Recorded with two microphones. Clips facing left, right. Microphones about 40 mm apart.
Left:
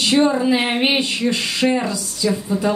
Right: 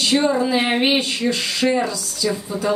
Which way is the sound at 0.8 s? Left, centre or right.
Left.